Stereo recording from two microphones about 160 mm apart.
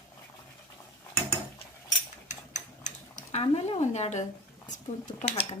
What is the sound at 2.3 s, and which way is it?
Cutlery, 50° left (ahead or behind).